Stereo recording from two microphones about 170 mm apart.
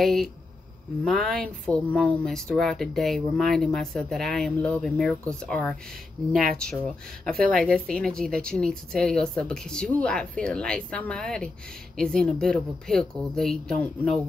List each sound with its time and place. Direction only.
0.0 s speech: centre (ahead or behind)